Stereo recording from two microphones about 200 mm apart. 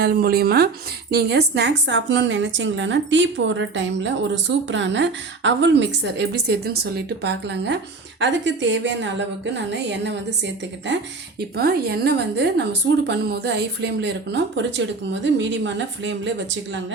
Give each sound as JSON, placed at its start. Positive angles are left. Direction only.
{"t": 0.0, "sound": "a woman's voice", "side_deg": -50}